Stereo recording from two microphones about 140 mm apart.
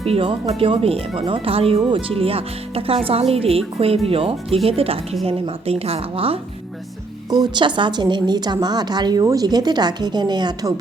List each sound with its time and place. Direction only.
0.0 s speech: 40° right (ahead or behind)
7.3 s a woman's voice: 30° right (ahead or behind)